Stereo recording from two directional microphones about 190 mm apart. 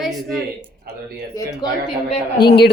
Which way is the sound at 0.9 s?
55° right (ahead or behind).